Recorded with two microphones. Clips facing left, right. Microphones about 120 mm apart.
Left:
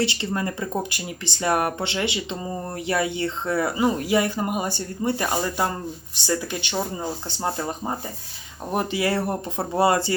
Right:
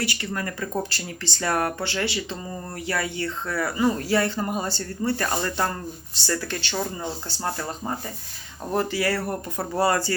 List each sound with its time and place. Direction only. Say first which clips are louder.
0.0 s speech: left 4 dB; 25° left (ahead or behind)